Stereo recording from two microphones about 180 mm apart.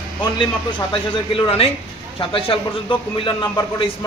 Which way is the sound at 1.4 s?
30° left (ahead or behind).